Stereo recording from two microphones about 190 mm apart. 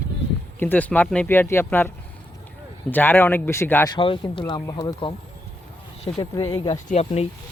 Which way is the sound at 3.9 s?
25° left (ahead or behind).